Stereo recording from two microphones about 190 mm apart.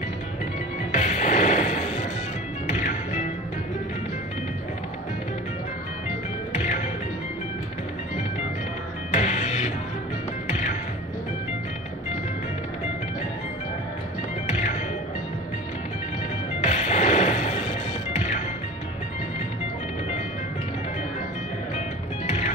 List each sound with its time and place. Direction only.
0.9 s music: 40° left (ahead or behind)
6.5 s music: 40° left (ahead or behind)
9.1 s music: 35° left (ahead or behind)
14.4 s music: 40° left (ahead or behind)
16.6 s music: 40° left (ahead or behind)
21.7 s music: 40° left (ahead or behind)